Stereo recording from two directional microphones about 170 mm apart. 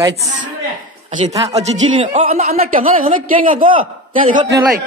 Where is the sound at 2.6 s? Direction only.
55° right (ahead or behind).